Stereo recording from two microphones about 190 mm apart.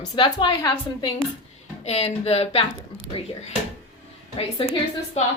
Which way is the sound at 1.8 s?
35° left (ahead or behind).